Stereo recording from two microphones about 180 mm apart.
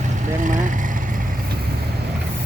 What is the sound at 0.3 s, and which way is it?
Vehicle, 45° right (ahead or behind).